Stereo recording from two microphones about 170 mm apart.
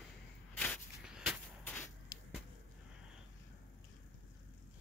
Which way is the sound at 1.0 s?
5° right (ahead or behind).